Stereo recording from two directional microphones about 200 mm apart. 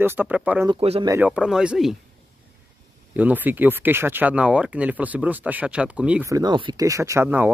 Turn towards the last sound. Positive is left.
turn(degrees=-10)  # may be behind; listen again after turning